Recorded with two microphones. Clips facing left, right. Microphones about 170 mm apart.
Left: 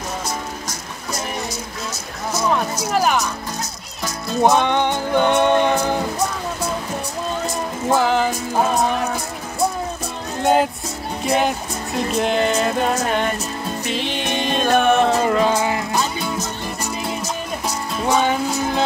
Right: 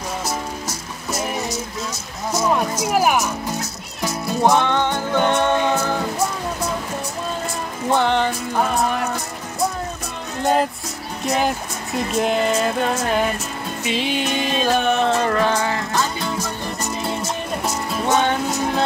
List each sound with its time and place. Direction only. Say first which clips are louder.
0.7 s music: right 1 dB; 5° right (ahead or behind)
2.8 s speech: right 1 dB; 10° right (ahead or behind)
4.4 s music: left 1 dB; 15° left (ahead or behind)
7.9 s music: left 1 dB; 5° left (ahead or behind)
10.4 s music: left 2 dB; centre (ahead or behind)
14.7 s music: left 4 dB; 50° left (ahead or behind)
15.0 s music: left 1 dB; 10° left (ahead or behind)
17.6 s music: even; centre (ahead or behind)